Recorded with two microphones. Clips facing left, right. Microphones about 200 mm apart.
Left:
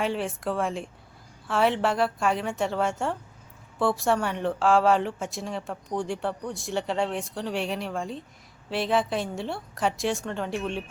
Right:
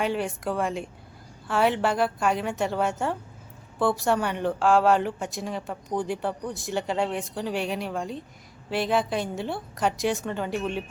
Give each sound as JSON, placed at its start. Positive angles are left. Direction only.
{"t": 0.0, "sound": "speech", "side_deg": 0}